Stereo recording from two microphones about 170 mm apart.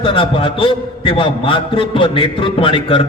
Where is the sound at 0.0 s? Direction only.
30° left (ahead or behind).